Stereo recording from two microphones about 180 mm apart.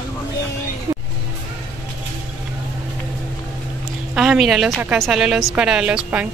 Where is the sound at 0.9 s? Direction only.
15° right (ahead or behind).